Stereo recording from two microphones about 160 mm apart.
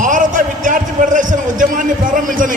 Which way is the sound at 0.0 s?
55° right (ahead or behind).